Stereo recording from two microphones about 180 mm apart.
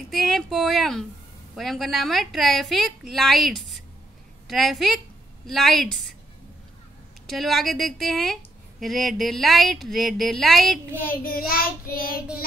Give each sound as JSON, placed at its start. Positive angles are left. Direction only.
{"t": 0.1, "sound": "a woman's voice", "side_deg": 0}
{"t": 7.2, "sound": "a woman's voice", "side_deg": 0}
{"t": 11.0, "sound": "child singing", "side_deg": 55}